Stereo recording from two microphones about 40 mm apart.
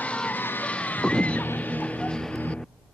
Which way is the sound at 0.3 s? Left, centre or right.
Left.